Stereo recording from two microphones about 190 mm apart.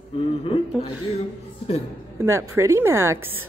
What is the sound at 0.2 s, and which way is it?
Speech, 30° left (ahead or behind).